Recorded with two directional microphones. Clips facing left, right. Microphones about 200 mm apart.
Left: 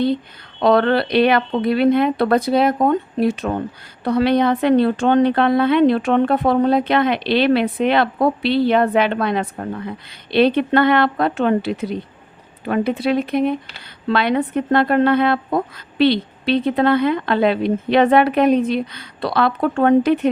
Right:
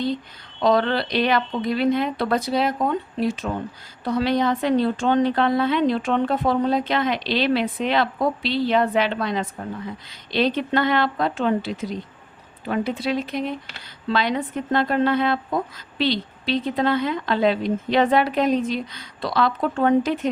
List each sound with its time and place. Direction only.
0.6 s a woman's voice: 60° left (ahead or behind)